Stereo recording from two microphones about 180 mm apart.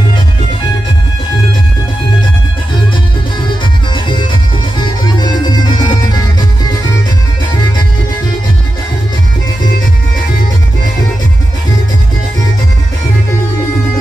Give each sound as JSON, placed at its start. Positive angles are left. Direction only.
{"t": 3.9, "sound": "music", "side_deg": 25}